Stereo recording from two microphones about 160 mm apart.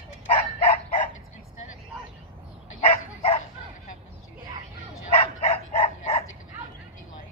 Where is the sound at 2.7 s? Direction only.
40° left (ahead or behind).